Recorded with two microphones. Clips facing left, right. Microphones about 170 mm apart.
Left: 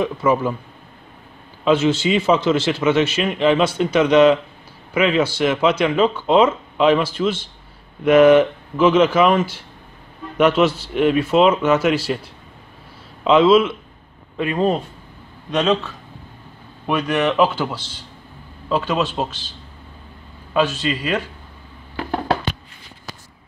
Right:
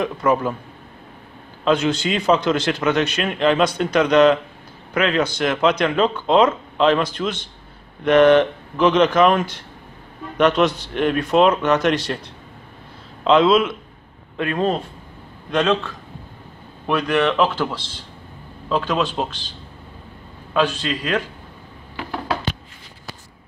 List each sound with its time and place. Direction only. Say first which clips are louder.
0.0 s a man's voice: left 1 dB; 5° left (ahead or behind)
1.6 s a man's voice: left 2 dB; 5° left (ahead or behind)
13.2 s a man's voice: left 2 dB; 5° left (ahead or behind)
20.5 s speech: left 1 dB; 5° left (ahead or behind)